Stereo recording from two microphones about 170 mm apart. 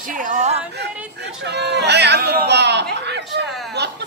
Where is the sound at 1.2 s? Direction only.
85° right.